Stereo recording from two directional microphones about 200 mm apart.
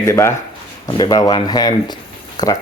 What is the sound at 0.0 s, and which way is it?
Speech, 15° left (ahead or behind).